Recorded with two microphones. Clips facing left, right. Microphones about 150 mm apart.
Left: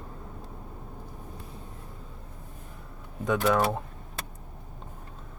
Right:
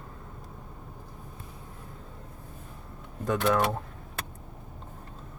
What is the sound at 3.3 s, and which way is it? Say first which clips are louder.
Speech: left 1 dB; centre (ahead or behind).